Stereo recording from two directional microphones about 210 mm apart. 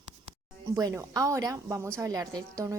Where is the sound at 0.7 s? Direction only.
15° right (ahead or behind).